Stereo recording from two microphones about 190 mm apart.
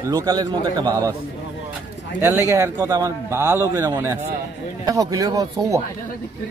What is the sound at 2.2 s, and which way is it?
A man's voice, 10° right (ahead or behind).